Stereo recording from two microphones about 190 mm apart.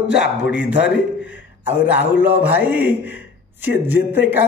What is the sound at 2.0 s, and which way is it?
Speech, 10° right (ahead or behind).